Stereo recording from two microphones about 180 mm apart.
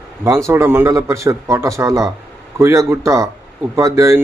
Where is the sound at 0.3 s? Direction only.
15° right (ahead or behind).